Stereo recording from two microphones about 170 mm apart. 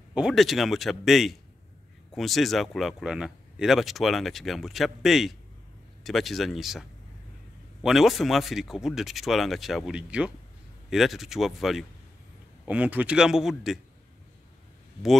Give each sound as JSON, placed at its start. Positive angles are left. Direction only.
{"t": 0.1, "sound": "speech", "side_deg": 0}